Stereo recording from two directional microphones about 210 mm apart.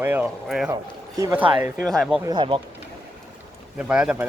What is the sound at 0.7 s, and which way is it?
Speech, 15° right (ahead or behind).